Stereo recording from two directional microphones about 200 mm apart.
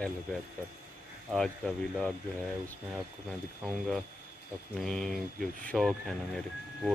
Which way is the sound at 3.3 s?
Centre (ahead or behind).